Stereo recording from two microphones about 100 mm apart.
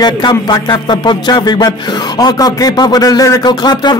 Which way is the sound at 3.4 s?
45° left (ahead or behind).